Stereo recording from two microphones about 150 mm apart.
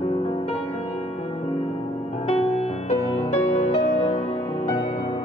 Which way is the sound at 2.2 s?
45° left (ahead or behind).